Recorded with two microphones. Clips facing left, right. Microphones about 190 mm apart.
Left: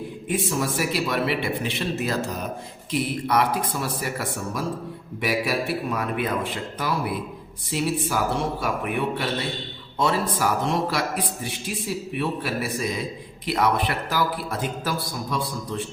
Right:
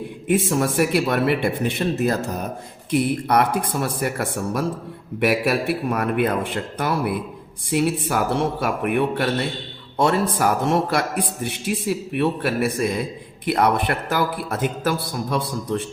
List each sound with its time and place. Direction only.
0.3 s a man's voice: 55° right (ahead or behind)